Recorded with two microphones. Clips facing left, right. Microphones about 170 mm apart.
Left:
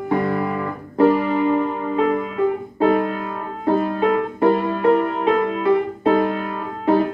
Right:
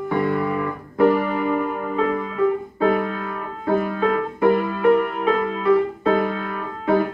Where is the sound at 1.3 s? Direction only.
25° left (ahead or behind).